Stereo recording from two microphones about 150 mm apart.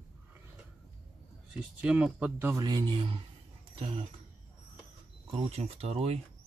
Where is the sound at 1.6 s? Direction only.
5° right (ahead or behind).